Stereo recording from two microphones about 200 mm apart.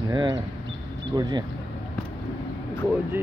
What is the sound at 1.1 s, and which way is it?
Speech, 20° right (ahead or behind).